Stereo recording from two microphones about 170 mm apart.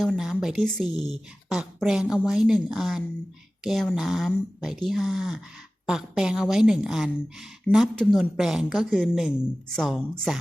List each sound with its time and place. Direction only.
0.0 s a woman's voice: centre (ahead or behind)